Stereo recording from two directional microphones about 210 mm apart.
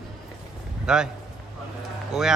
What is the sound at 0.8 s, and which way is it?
Speech, 5° right (ahead or behind).